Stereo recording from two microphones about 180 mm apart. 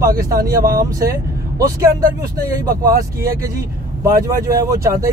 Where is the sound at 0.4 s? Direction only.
55° right (ahead or behind).